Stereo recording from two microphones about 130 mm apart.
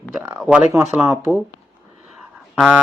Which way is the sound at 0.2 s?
20° right (ahead or behind).